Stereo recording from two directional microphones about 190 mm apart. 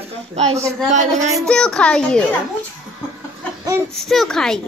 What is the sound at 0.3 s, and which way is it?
Speech, 35° right (ahead or behind).